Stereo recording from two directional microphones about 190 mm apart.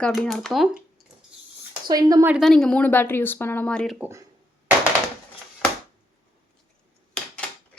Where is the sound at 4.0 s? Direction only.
15° right (ahead or behind).